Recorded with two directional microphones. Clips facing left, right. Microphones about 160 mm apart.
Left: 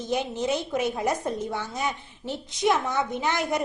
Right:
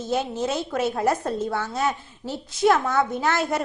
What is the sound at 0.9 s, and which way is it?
Speech, 60° right (ahead or behind).